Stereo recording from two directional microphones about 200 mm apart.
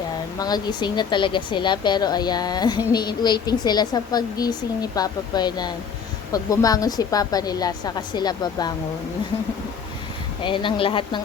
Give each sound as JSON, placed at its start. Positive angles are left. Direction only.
{"t": 0.3, "sound": "a woman's voice", "side_deg": 20}
{"t": 10.4, "sound": "a woman's voice", "side_deg": 25}